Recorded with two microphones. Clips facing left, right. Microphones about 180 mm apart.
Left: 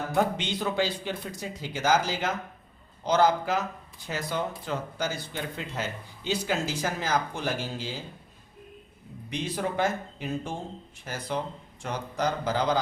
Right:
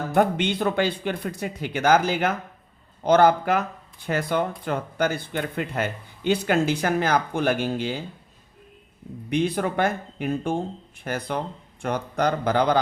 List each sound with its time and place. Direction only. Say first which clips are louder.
0.1 s speech: right 6 dB; 60° right (ahead or behind)
9.3 s speech: right 7 dB; 60° right (ahead or behind)